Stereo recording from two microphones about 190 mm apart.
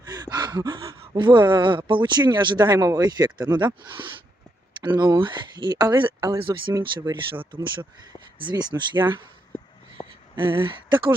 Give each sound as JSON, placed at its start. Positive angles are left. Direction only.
{"t": 0.0, "sound": "speech", "side_deg": -20}
{"t": 8.4, "sound": "speech", "side_deg": -25}
{"t": 10.3, "sound": "speech", "side_deg": -25}